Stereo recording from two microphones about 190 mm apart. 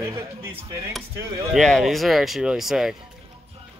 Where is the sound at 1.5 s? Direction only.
Centre (ahead or behind).